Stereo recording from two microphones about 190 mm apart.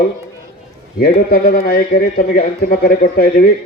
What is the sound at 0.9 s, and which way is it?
A man's voice, 55° left (ahead or behind).